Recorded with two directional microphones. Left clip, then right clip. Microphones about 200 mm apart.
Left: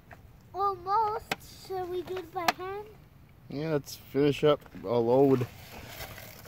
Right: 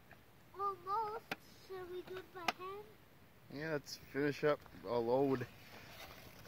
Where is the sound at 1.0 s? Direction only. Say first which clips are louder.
Left 12 dB; 5° right (ahead or behind).